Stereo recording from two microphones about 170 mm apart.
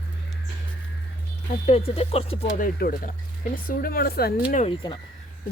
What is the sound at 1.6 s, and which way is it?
Speech, 35° left (ahead or behind).